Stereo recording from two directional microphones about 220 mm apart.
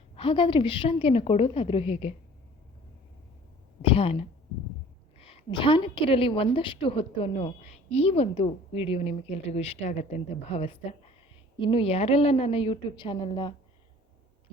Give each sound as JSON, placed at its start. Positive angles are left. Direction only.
{"t": 0.2, "sound": "a woman's voice", "side_deg": 25}
{"t": 3.8, "sound": "a woman's voice", "side_deg": 25}